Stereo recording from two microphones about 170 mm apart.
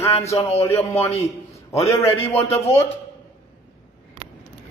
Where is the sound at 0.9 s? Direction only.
35° left (ahead or behind).